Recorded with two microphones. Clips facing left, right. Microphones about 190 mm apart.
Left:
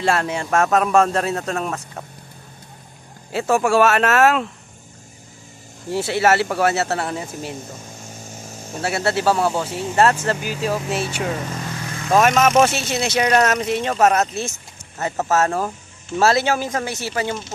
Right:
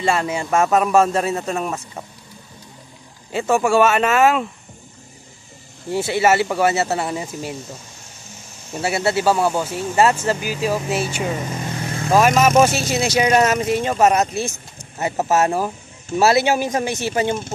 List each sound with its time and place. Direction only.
0.0 s speech: centre (ahead or behind)
3.3 s speech: centre (ahead or behind)
5.9 s speech: centre (ahead or behind)
8.8 s speech: centre (ahead or behind)
11.4 s vehicle: 20° right (ahead or behind)
12.1 s speech: 5° right (ahead or behind)
15.0 s speech: 15° right (ahead or behind)